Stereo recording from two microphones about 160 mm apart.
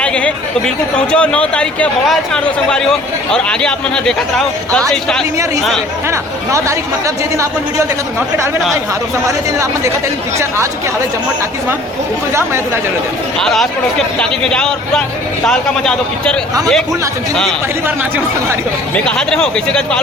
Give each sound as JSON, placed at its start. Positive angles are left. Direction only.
{"t": 0.0, "sound": "speech", "side_deg": 5}
{"t": 6.1, "sound": "speech", "side_deg": -15}
{"t": 9.2, "sound": "speech", "side_deg": -20}
{"t": 13.4, "sound": "speech", "side_deg": 0}
{"t": 18.9, "sound": "speech", "side_deg": 5}